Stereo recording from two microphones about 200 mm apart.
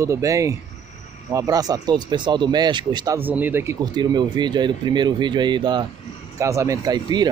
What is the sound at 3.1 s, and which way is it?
Speech, 10° right (ahead or behind).